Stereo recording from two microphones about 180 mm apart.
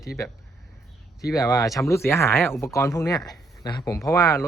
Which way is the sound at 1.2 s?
20° left (ahead or behind).